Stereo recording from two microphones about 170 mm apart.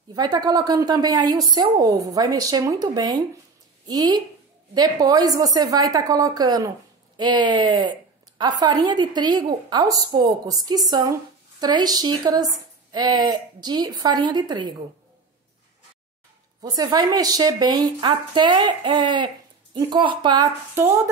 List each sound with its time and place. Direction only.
0.1 s a woman's voice: 25° right (ahead or behind)
16.6 s a woman's voice: 25° right (ahead or behind)